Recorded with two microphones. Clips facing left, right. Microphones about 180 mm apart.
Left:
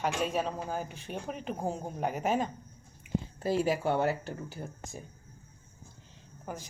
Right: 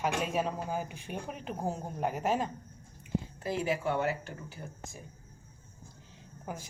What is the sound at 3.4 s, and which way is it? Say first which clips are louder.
Speech: left 4 dB; 30° left (ahead or behind).